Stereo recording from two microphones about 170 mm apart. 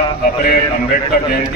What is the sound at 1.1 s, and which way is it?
Speech, 65° left (ahead or behind).